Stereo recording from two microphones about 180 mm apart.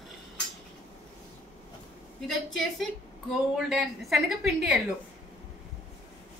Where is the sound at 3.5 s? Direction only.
Centre (ahead or behind).